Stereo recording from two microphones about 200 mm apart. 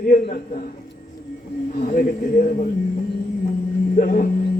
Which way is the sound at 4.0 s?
45° left (ahead or behind).